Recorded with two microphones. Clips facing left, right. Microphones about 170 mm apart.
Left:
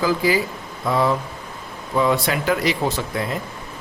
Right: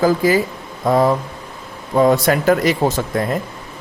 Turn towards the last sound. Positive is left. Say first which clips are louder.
# right 5 dB
turn(degrees=-45)  # may be behind; listen again after turning